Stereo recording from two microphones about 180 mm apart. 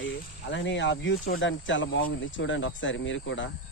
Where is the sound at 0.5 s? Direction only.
90° left.